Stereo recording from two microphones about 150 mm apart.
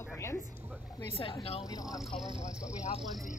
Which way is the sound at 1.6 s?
25° left (ahead or behind).